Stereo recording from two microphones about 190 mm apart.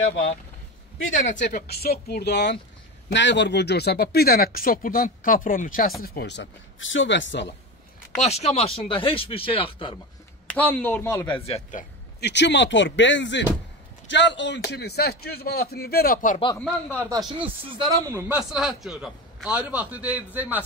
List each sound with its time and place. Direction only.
1.4 s speech: 50° left (ahead or behind)
6.0 s speech: 60° left (ahead or behind)
8.2 s speech: 35° left (ahead or behind)
10.4 s a man's voice: 10° left (ahead or behind)
11.2 s speech: 30° left (ahead or behind)
12.2 s speech: 65° left (ahead or behind); by 16.3 s 50° left (ahead or behind)
16.9 s speech: 15° right (ahead or behind)
18.5 s a man's voice: centre (ahead or behind)